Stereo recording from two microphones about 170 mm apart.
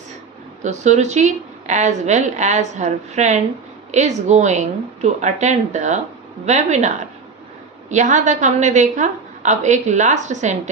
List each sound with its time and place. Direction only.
0.7 s a woman's voice: 40° right (ahead or behind)